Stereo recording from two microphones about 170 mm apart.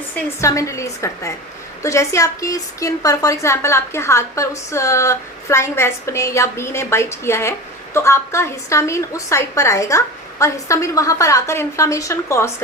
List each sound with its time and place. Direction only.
0.4 s a woman's voice: 15° left (ahead or behind)